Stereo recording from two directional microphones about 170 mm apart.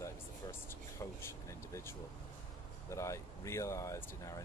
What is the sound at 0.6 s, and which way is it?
Speech, 15° left (ahead or behind).